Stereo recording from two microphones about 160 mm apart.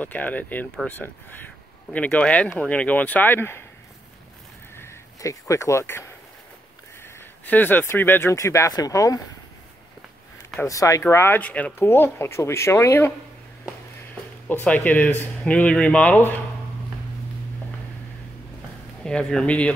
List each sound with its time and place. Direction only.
0.0 s speech: 10° left (ahead or behind)
4.7 s speech: 20° left (ahead or behind)
10.6 s speech: 20° left (ahead or behind)
14.5 s speech: 10° left (ahead or behind)
19.0 s speech: 5° left (ahead or behind)